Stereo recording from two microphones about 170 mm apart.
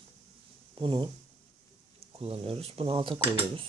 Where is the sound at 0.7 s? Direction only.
30° right (ahead or behind).